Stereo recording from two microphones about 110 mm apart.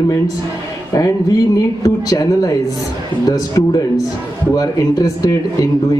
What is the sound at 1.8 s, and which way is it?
A man's voice, 35° left (ahead or behind).